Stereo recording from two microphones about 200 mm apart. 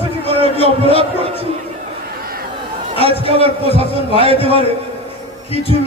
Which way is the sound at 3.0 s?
30° right (ahead or behind).